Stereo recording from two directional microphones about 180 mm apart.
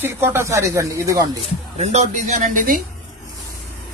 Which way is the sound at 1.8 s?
40° right (ahead or behind).